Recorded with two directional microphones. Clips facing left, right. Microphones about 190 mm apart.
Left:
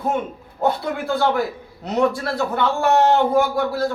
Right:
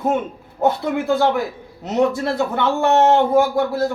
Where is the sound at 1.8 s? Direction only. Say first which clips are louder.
Right 2 dB; 20° right (ahead or behind).